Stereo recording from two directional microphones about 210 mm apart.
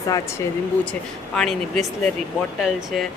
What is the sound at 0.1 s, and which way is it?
Speech, 15° left (ahead or behind).